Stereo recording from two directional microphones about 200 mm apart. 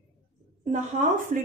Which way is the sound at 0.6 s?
35° right (ahead or behind).